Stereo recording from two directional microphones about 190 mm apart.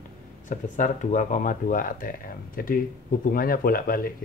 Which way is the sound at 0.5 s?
40° left (ahead or behind).